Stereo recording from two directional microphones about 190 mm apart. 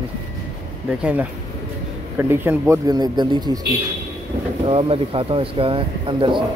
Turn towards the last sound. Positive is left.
turn(degrees=-25)  # may be behind; listen again after turning